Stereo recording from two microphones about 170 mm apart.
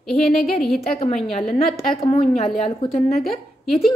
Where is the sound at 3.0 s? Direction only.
60° left (ahead or behind).